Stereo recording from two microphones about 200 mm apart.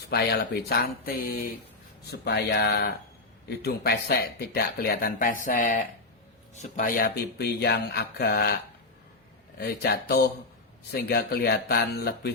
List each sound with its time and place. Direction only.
0.1 s speech: 55° left (ahead or behind)
9.6 s speech: 55° left (ahead or behind)